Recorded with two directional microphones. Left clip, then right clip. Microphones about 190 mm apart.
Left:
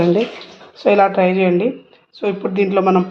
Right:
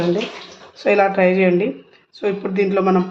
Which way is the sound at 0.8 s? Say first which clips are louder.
Left 2 dB; 20° left (ahead or behind).